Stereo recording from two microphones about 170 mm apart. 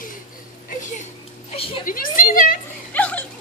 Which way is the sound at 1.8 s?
55° left (ahead or behind).